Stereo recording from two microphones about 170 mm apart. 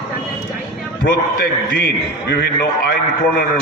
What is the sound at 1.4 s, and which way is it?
A man's voice, 80° left.